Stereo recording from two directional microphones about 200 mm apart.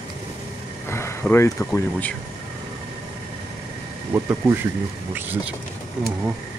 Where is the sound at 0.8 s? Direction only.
10° left (ahead or behind).